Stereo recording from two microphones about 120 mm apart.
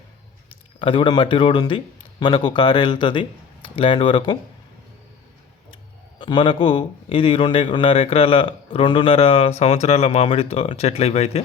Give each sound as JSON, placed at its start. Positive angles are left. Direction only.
{"t": 0.8, "sound": "speech", "side_deg": 45}
{"t": 6.1, "sound": "a man's voice", "side_deg": 45}